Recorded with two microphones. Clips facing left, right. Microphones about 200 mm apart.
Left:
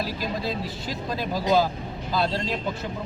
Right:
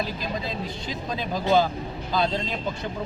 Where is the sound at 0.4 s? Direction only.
5° left (ahead or behind).